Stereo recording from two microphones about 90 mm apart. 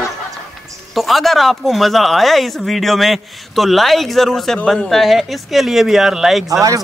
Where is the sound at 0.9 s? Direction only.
Centre (ahead or behind).